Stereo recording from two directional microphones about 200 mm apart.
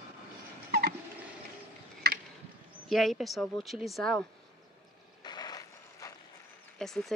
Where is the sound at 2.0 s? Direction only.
55° right (ahead or behind).